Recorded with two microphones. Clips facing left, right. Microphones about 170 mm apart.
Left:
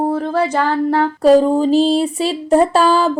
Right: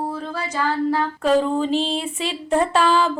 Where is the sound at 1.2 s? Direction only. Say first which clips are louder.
Left 8 dB; 40° left (ahead or behind).